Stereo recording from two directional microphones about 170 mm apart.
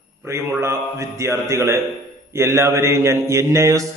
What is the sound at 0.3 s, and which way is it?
Mantra, 15° right (ahead or behind).